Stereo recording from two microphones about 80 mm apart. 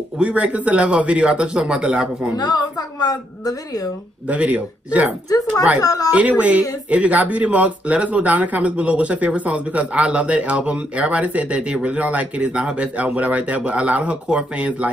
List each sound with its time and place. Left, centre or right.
0.2 s speech: centre
2.3 s a woman's voice: left
4.3 s speech: centre
5.8 s speech: left
6.1 s speech: centre